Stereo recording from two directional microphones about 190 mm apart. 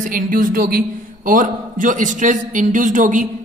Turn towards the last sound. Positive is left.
turn(degrees=-40)  # may be behind; listen again after turning